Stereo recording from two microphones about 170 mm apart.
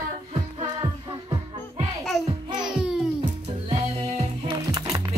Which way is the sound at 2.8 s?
5° right (ahead or behind).